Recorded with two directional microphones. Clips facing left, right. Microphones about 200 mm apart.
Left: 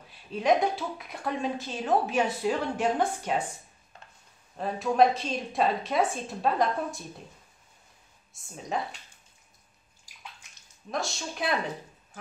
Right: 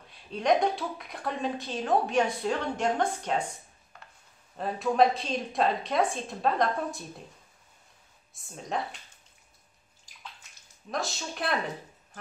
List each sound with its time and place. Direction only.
0.3 s a woman's voice: centre (ahead or behind)
4.6 s a woman's voice: centre (ahead or behind)
8.3 s a woman's voice: centre (ahead or behind)
10.9 s a woman's voice: centre (ahead or behind)